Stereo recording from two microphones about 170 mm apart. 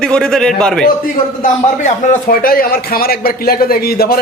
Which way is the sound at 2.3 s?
55° left (ahead or behind).